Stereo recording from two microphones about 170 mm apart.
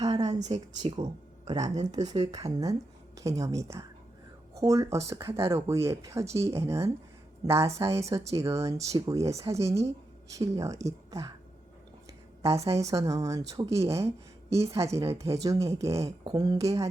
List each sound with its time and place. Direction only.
0.0 s a sound: 20° right (ahead or behind)
0.3 s a woman's voice: 25° right (ahead or behind)
12.4 s a woman's voice: 15° right (ahead or behind)